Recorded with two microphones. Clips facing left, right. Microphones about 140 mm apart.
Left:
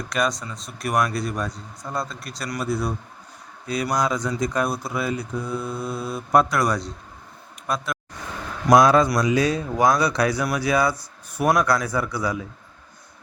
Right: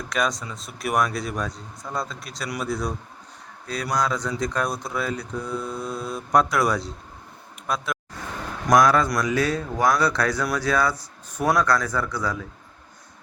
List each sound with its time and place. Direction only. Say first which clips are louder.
0.1 s speech: left 1 dB; centre (ahead or behind)
8.7 s a man's voice: left 3 dB; 25° left (ahead or behind)